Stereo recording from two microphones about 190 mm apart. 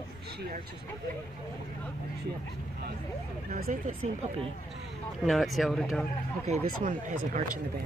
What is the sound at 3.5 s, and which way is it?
Speech, 45° right (ahead or behind).